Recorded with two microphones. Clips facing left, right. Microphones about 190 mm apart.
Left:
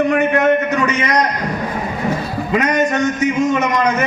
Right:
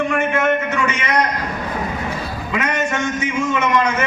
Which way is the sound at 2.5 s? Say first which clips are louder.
Left 5 dB; 40° left (ahead or behind).